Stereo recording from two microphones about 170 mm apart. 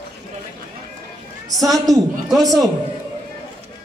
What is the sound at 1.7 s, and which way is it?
A man's voice, centre (ahead or behind).